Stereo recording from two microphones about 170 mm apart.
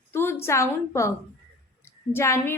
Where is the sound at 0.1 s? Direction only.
15° left (ahead or behind).